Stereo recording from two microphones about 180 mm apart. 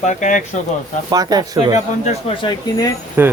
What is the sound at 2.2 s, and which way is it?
Speech, 30° left (ahead or behind).